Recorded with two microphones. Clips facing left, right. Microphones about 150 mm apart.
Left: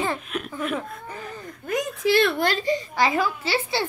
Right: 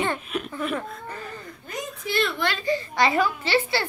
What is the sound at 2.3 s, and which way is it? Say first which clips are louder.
Speech: left 4 dB; 45° left (ahead or behind).